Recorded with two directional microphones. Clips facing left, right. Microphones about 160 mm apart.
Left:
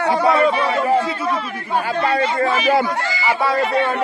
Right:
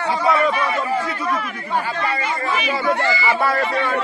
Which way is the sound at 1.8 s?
60° left (ahead or behind).